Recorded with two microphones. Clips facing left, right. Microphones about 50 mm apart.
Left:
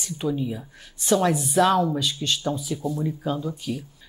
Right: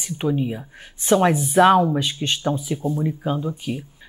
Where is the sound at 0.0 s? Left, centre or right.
Right.